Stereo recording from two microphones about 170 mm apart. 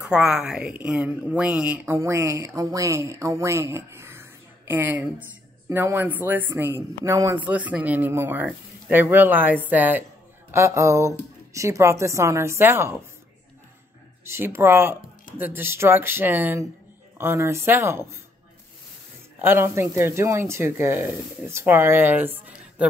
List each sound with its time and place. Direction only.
0.0 s speech: 5° right (ahead or behind)
14.2 s speech: 15° right (ahead or behind)
19.4 s speech: 15° right (ahead or behind)